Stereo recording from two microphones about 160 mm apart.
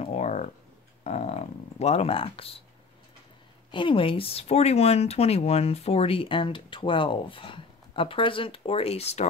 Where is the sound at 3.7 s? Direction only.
30° left (ahead or behind).